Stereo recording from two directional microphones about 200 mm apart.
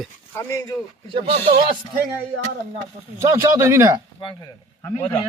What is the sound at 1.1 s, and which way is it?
Speech, 25° right (ahead or behind).